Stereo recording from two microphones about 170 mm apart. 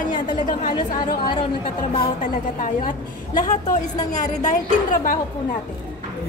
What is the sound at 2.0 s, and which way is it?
Speech, 50° left (ahead or behind).